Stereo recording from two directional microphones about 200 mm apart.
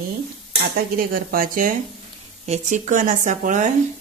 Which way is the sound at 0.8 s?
45° right (ahead or behind).